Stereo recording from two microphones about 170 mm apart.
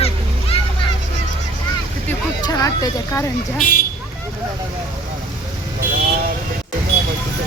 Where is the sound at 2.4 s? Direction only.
20° left (ahead or behind).